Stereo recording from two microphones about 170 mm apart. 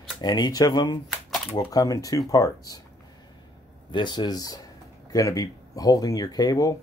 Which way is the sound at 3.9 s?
25° left (ahead or behind).